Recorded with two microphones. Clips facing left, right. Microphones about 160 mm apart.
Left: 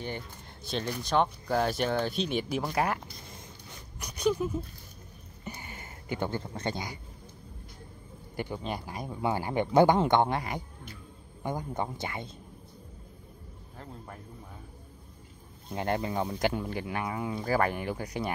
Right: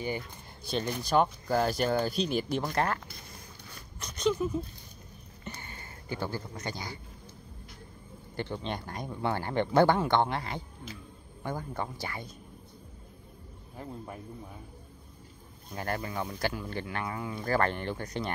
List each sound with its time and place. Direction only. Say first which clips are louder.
0.7 s speech: right 1 dB; centre (ahead or behind)
4.0 s zipper: left 1 dB; 10° left (ahead or behind)
5.4 s a sound: left 2 dB; 15° left (ahead or behind)
8.4 s speech: even; 10° left (ahead or behind)
13.7 s a man's voice: right 4 dB; 10° right (ahead or behind)
15.7 s speech: left 4 dB; 20° left (ahead or behind)